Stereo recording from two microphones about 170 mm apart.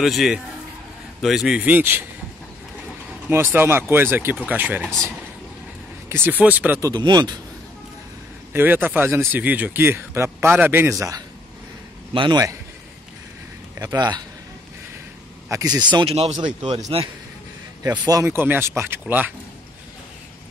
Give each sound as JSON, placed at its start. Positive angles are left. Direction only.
{"t": 0.0, "sound": "speech", "side_deg": 0}
{"t": 3.3, "sound": "speech", "side_deg": -15}
{"t": 6.0, "sound": "speech", "side_deg": -15}
{"t": 6.9, "sound": "a man's voice", "side_deg": -25}
{"t": 8.5, "sound": "a man's voice", "side_deg": -10}
{"t": 13.7, "sound": "a man's voice", "side_deg": -25}
{"t": 15.4, "sound": "speech", "side_deg": -20}
{"t": 15.9, "sound": "speech", "side_deg": -30}
{"t": 17.8, "sound": "speech", "side_deg": -20}